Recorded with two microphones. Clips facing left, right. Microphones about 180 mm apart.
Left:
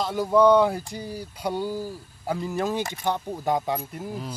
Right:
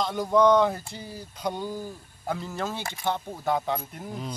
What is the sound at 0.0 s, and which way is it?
Speech, 5° left (ahead or behind).